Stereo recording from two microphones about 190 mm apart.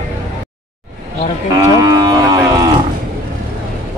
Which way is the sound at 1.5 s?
20° right (ahead or behind).